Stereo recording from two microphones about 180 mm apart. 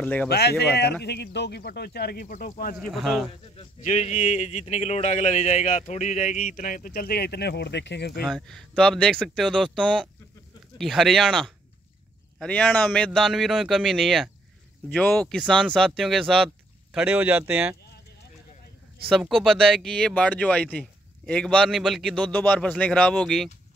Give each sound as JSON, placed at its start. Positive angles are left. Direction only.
{"t": 0.0, "sound": "speech", "side_deg": 10}
{"t": 0.3, "sound": "speech", "side_deg": 65}
{"t": 2.9, "sound": "a man's voice", "side_deg": 0}
{"t": 3.5, "sound": "a man's voice", "side_deg": 40}
{"t": 8.3, "sound": "a man's voice", "side_deg": 0}
{"t": 16.9, "sound": "speech", "side_deg": -10}
{"t": 19.0, "sound": "a man's voice", "side_deg": 0}